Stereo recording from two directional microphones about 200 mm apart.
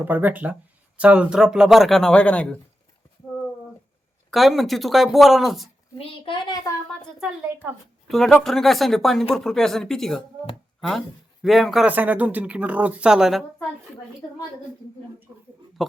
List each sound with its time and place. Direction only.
0.0 s speech: 10° right (ahead or behind); by 2.6 s 5° left (ahead or behind)
4.3 s speech: centre (ahead or behind)
6.0 s a child's voice: 25° left (ahead or behind)
8.0 s speech: centre (ahead or behind)
10.8 s a sound: centre (ahead or behind)
11.4 s speech: centre (ahead or behind)
15.8 s speech: centre (ahead or behind)